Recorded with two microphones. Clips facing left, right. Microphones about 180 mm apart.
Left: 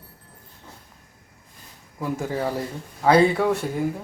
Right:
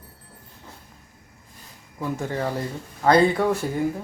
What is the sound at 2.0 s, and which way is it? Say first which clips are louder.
Speech: left 1 dB; 5° left (ahead or behind).